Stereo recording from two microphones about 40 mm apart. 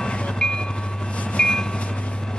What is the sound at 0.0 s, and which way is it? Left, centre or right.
Train, left.